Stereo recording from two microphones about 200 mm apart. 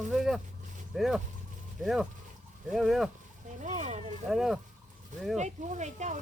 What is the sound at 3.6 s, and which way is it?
Speech, 35° right (ahead or behind).